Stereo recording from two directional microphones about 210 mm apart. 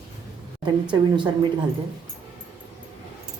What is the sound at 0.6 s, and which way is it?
Speech, 20° right (ahead or behind).